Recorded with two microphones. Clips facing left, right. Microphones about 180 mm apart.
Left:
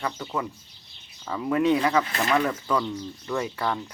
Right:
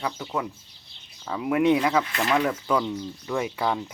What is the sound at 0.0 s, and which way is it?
Speech, 5° right (ahead or behind).